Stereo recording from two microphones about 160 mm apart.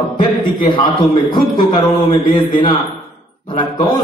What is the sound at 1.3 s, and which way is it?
A man's voice, 30° left (ahead or behind).